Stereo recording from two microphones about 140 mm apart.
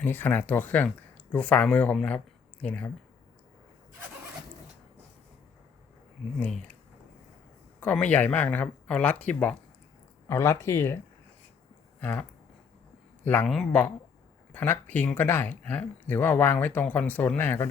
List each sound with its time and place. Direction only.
0.0 s speech: 15° left (ahead or behind)
6.4 s speech: 10° left (ahead or behind)
7.8 s speech: 10° left (ahead or behind)
11.9 s a sound: 10° left (ahead or behind)
13.2 s speech: 10° left (ahead or behind)